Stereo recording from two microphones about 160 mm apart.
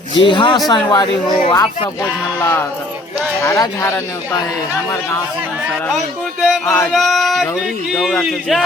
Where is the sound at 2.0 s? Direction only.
15° left (ahead or behind).